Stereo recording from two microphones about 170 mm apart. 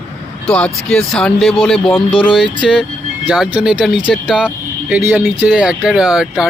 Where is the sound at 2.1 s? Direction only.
30° left (ahead or behind).